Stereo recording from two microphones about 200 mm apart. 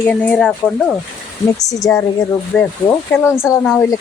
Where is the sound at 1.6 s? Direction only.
15° left (ahead or behind).